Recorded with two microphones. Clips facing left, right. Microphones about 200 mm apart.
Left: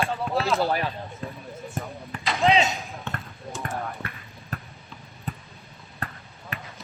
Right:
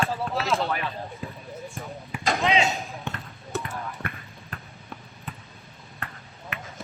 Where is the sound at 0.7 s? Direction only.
35° left (ahead or behind).